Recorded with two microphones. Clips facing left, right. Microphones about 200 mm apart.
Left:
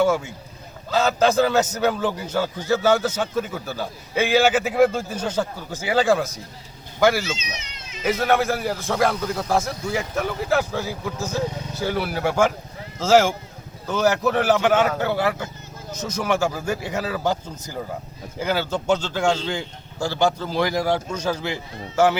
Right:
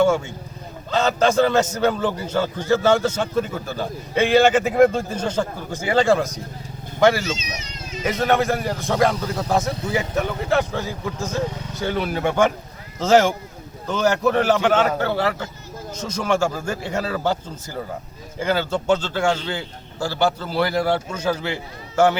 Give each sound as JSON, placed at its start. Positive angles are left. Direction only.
{"t": 0.9, "sound": "a man's voice", "side_deg": 5}
{"t": 7.3, "sound": "speech", "side_deg": -45}
{"t": 8.0, "sound": "a man's voice", "side_deg": 0}
{"t": 20.1, "sound": "a man's voice", "side_deg": -10}
{"t": 20.4, "sound": "a man's voice", "side_deg": 15}
{"t": 21.1, "sound": "a man's voice", "side_deg": -10}
{"t": 21.3, "sound": "a man's voice", "side_deg": 10}